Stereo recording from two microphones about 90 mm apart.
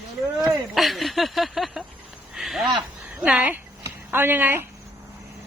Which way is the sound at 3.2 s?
15° right (ahead or behind).